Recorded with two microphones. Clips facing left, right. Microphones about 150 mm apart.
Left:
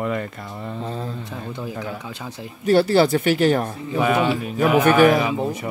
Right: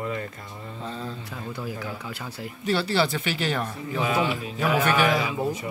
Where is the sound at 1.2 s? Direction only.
20° left (ahead or behind).